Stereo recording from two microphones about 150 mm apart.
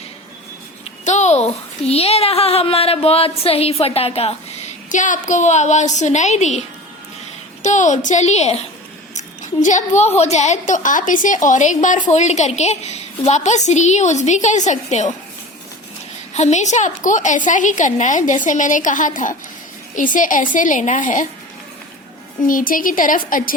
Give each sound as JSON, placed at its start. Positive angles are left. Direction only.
{"t": 1.0, "sound": "a woman's voice", "side_deg": 50}
{"t": 4.9, "sound": "a woman's voice", "side_deg": 55}
{"t": 9.1, "sound": "a sound", "side_deg": 55}
{"t": 10.2, "sound": "a woman's voice", "side_deg": 50}
{"t": 16.3, "sound": "a woman's voice", "side_deg": 50}
{"t": 22.4, "sound": "a woman's voice", "side_deg": 65}